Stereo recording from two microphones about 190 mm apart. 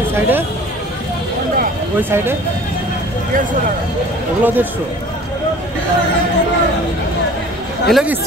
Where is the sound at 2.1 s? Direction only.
10° right (ahead or behind).